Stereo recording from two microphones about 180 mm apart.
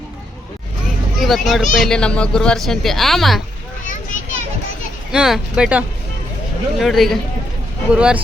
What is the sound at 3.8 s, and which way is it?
Children playing, 45° left (ahead or behind).